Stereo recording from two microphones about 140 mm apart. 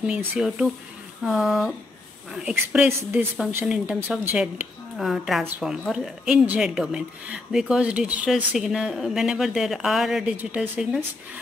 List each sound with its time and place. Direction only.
0.0 s speech: 5° right (ahead or behind)
2.9 s speech: 15° right (ahead or behind)